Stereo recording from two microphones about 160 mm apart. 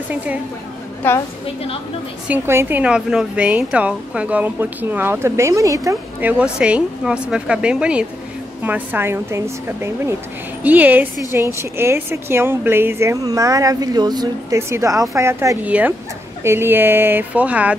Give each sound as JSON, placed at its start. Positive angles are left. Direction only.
{"t": 0.1, "sound": "speech", "side_deg": -10}
{"t": 1.0, "sound": "a woman's voice", "side_deg": 15}
{"t": 2.2, "sound": "speech", "side_deg": -15}
{"t": 6.3, "sound": "speech", "side_deg": -5}